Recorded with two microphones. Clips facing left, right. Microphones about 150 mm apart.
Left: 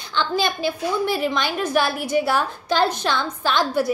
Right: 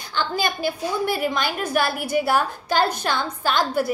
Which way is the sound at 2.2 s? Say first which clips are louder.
Right 1 dB; 50° right (ahead or behind).